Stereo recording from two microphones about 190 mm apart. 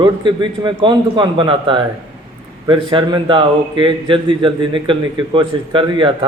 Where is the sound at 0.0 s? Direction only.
25° right (ahead or behind).